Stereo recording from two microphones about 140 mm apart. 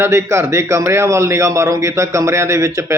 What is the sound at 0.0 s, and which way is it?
A man's voice, 20° right (ahead or behind).